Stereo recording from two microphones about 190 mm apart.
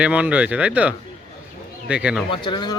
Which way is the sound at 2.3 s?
25° left (ahead or behind).